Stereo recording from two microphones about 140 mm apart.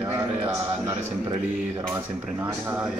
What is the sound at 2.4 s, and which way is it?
Speech, 15° right (ahead or behind).